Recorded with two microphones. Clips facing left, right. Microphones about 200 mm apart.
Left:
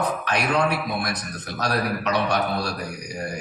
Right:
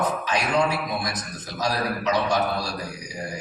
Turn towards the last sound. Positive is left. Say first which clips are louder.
# left 2 dB
turn(degrees=60)  # may be behind; listen again after turning